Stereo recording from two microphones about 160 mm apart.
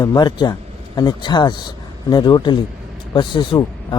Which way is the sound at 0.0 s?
25° left (ahead or behind).